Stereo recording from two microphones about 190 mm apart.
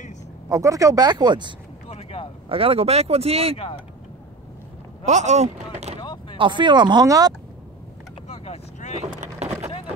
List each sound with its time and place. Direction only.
0.5 s speech: 15° right (ahead or behind)
1.9 s vehicle: 30° left (ahead or behind)
2.5 s speech: 30° right (ahead or behind)
3.5 s speech: 30° left (ahead or behind)
5.0 s speech: 35° right (ahead or behind); by 7.3 s 20° right (ahead or behind)
8.3 s vehicle: 35° left (ahead or behind)
9.2 s vehicle: 35° right (ahead or behind)